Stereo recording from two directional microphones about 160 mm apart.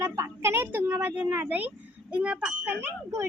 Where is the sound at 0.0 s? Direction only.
15° right (ahead or behind).